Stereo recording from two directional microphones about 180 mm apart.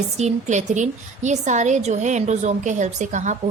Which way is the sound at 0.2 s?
40° right (ahead or behind).